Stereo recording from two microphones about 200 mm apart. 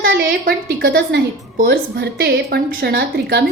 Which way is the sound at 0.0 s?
50° right (ahead or behind).